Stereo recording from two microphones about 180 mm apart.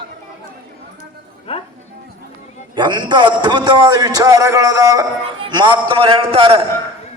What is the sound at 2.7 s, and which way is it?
A man's voice, 25° right (ahead or behind).